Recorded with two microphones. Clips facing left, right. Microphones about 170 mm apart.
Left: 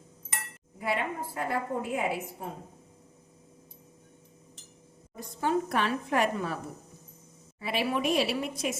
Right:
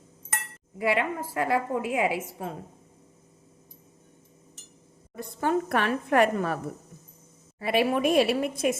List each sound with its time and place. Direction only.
0.8 s a woman's voice: 90° right
5.1 s a woman's voice: 55° right (ahead or behind)
7.6 s a woman's voice: 55° right (ahead or behind)